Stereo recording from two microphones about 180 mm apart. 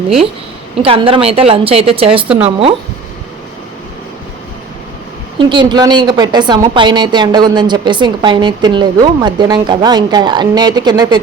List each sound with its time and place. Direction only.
0.8 s a woman's voice: 30° right (ahead or behind)
5.4 s a woman's voice: 25° right (ahead or behind)